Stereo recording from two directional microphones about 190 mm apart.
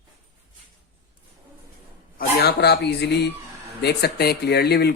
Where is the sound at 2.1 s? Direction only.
60° left (ahead or behind).